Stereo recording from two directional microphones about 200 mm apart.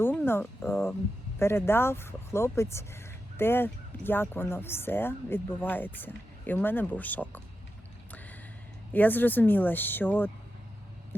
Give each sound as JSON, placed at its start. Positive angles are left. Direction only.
{"t": 0.0, "sound": "speech", "side_deg": 10}
{"t": 8.9, "sound": "speech", "side_deg": 10}